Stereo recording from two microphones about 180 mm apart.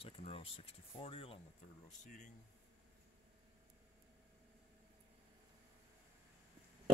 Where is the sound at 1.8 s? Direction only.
40° left (ahead or behind).